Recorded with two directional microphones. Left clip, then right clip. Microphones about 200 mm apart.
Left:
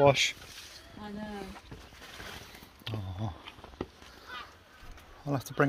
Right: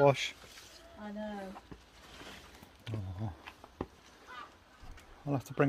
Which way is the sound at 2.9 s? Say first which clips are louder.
Left 5 dB; 5° right (ahead or behind).